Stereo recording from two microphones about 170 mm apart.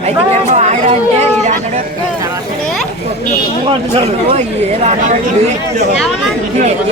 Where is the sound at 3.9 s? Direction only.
35° right (ahead or behind).